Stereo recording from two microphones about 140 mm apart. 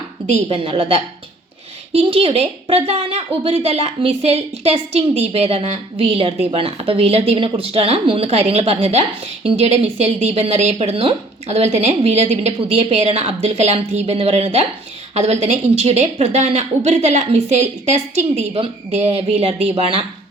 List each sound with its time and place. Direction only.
0.4 s a woman's voice: 40° right (ahead or behind)